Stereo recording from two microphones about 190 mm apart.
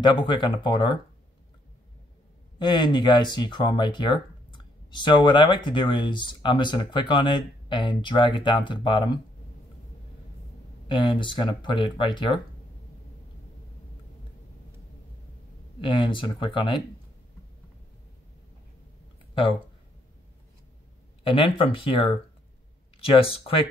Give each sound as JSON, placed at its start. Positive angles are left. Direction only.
{"t": 0.0, "sound": "speech", "side_deg": 25}
{"t": 2.6, "sound": "speech", "side_deg": 25}
{"t": 10.9, "sound": "speech", "side_deg": 25}
{"t": 15.8, "sound": "speech", "side_deg": 25}
{"t": 21.2, "sound": "speech", "side_deg": 30}